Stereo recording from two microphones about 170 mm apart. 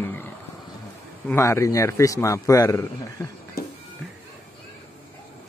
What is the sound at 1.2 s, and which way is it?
A man's voice, 15° left (ahead or behind).